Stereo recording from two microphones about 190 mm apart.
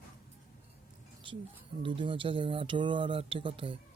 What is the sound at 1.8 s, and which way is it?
Speech, 25° right (ahead or behind).